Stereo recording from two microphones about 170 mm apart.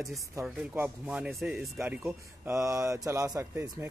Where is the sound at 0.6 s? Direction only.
10° right (ahead or behind).